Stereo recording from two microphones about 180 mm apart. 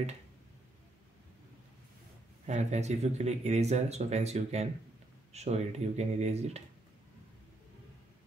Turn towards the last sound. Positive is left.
turn(degrees=-35)  # may be behind; listen again after turning